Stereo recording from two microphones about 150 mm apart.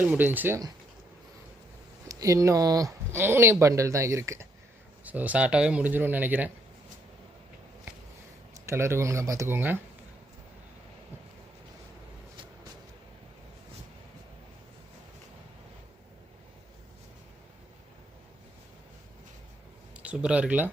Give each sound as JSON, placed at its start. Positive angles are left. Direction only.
{"t": 0.0, "sound": "speech", "side_deg": -10}
{"t": 2.0, "sound": "speech", "side_deg": -20}
{"t": 8.5, "sound": "speech", "side_deg": -20}
{"t": 20.0, "sound": "speech", "side_deg": -10}